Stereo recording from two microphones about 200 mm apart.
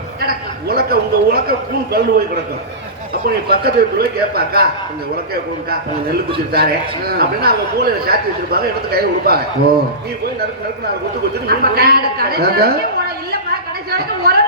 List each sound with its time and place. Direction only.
0.7 s speech: 50° right (ahead or behind)
3.2 s speech: 50° right (ahead or behind)
11.4 s speech: 50° right (ahead or behind)
13.9 s speech: 50° right (ahead or behind)